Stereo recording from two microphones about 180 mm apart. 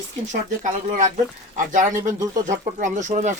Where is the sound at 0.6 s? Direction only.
45° right (ahead or behind).